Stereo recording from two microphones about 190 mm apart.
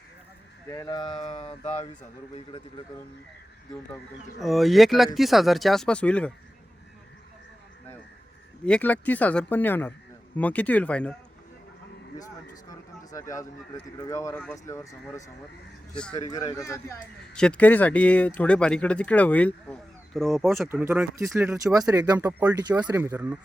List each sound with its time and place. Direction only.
0.7 s speech: 20° left (ahead or behind); by 1.9 s 35° left (ahead or behind)
4.4 s speech: centre (ahead or behind)
8.6 s speech: 5° left (ahead or behind)
13.1 s speech: 15° left (ahead or behind)
15.9 s speech: 5° left (ahead or behind)
16.3 s speech: 15° left (ahead or behind)
17.3 s speech: 5° left (ahead or behind)
20.7 s speech: 10° right (ahead or behind)
22.2 s speech: 10° right (ahead or behind)
22.8 s speech: 20° right (ahead or behind)